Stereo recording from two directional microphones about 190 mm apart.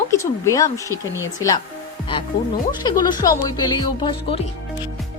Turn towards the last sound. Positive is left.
turn(degrees=25)  # may be behind; listen again after turning